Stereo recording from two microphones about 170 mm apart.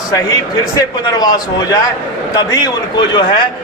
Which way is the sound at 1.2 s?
20° left (ahead or behind).